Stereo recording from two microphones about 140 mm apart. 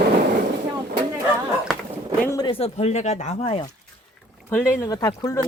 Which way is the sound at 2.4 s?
40° left (ahead or behind).